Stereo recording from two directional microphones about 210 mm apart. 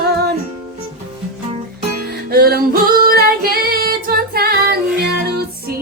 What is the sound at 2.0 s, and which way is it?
Music, 45° right (ahead or behind).